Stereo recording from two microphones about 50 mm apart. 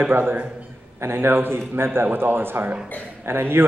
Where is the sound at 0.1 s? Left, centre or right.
Right.